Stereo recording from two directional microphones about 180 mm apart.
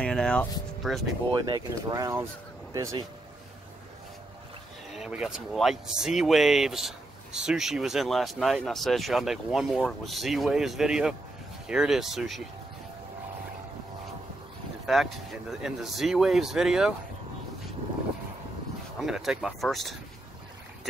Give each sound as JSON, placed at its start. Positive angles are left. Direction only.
{"t": 0.0, "sound": "speech", "side_deg": 5}
{"t": 1.5, "sound": "speech", "side_deg": -20}
{"t": 4.9, "sound": "speech", "side_deg": -5}
{"t": 14.9, "sound": "speech", "side_deg": 0}
{"t": 18.9, "sound": "speech", "side_deg": 0}